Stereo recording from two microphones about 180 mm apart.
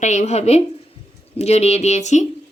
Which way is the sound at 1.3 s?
35° left (ahead or behind).